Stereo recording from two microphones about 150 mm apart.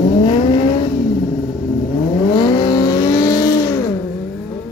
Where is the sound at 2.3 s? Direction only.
30° left (ahead or behind).